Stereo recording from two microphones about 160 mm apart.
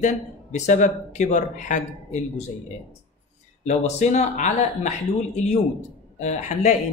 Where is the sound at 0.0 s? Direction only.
50° left (ahead or behind).